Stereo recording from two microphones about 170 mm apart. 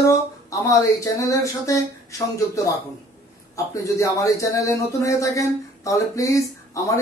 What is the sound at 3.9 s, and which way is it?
Speech, 20° left (ahead or behind).